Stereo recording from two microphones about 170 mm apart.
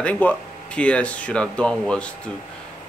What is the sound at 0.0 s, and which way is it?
Speech, 10° left (ahead or behind).